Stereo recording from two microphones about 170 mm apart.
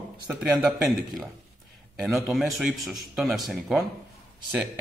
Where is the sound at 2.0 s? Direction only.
Centre (ahead or behind).